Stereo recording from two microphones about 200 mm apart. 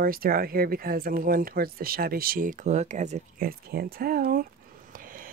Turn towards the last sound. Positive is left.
turn(degrees=-45)  # may be behind; listen again after turning